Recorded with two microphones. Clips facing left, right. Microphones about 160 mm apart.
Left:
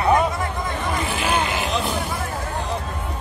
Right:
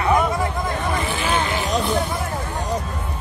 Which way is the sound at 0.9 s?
Centre (ahead or behind).